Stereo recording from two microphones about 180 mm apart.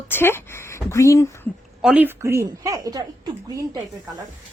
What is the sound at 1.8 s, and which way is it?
A woman's voice, 10° right (ahead or behind).